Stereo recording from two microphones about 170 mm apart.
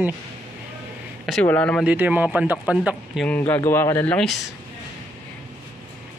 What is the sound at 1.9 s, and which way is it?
Speech, 10° right (ahead or behind).